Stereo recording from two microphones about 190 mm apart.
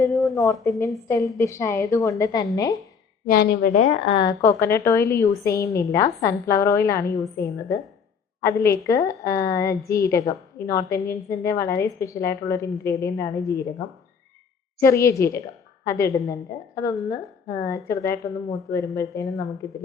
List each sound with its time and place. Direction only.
0.1 s a sound: centre (ahead or behind)
1.0 s a woman's voice: 15° left (ahead or behind)
3.2 s a woman's voice: 60° left (ahead or behind); by 19.2 s 15° left (ahead or behind)